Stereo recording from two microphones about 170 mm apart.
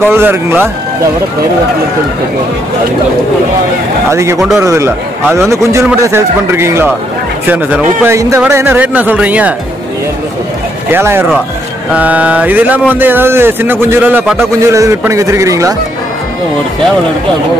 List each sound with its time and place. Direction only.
0.0 s speech: 10° right (ahead or behind)
4.1 s speech: 15° right (ahead or behind)
10.9 s speech: 10° right (ahead or behind)